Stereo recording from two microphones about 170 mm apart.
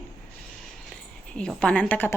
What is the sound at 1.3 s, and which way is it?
Speech, 5° left (ahead or behind).